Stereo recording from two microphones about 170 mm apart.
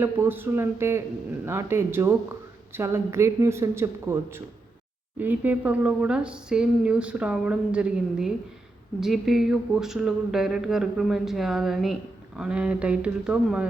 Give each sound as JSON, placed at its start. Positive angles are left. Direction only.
{"t": 0.0, "sound": "speech", "side_deg": -10}